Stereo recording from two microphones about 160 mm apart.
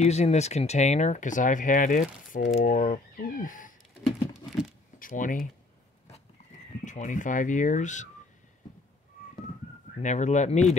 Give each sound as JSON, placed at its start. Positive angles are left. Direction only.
{"t": 0.0, "sound": "speech", "side_deg": 45}
{"t": 4.9, "sound": "speech", "side_deg": 55}
{"t": 6.8, "sound": "speech", "side_deg": 50}
{"t": 9.9, "sound": "speech", "side_deg": 45}